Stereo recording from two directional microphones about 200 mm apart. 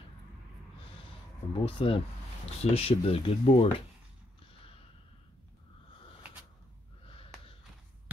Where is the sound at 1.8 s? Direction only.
30° left (ahead or behind).